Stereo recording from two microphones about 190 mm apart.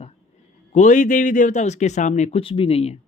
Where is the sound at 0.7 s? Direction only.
40° left (ahead or behind).